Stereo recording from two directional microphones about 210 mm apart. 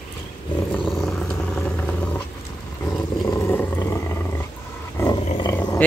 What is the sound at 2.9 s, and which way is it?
Roaring cats, 15° left (ahead or behind).